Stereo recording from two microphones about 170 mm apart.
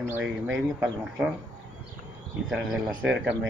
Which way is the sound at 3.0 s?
10° right (ahead or behind).